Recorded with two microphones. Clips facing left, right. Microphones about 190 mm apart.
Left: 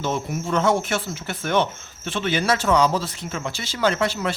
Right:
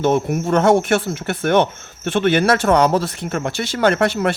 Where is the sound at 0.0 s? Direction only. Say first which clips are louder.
Right 8 dB; 60° right (ahead or behind).